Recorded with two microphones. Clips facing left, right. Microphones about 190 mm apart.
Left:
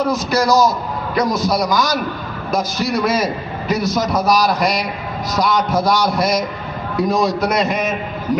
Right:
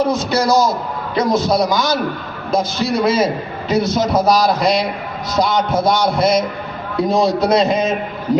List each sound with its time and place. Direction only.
0.0 s a man's voice: 25° right (ahead or behind)